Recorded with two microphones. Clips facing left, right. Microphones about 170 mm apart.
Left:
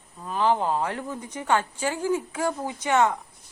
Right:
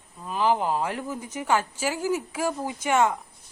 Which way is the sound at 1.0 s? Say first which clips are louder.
Right 1 dB; 10° right (ahead or behind).